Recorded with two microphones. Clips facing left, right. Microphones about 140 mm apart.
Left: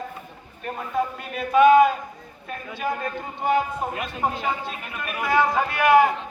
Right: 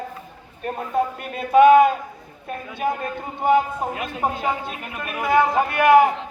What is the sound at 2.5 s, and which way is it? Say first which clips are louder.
Speech: right 4 dB; 55° right (ahead or behind).